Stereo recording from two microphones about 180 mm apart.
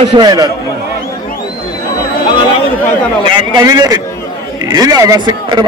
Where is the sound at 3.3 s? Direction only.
25° right (ahead or behind).